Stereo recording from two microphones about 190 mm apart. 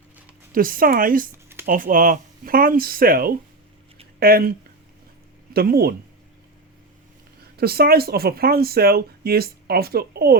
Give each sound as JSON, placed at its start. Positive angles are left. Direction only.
{"t": 0.5, "sound": "speech", "side_deg": -50}
{"t": 5.5, "sound": "speech", "side_deg": -55}
{"t": 7.5, "sound": "speech", "side_deg": -55}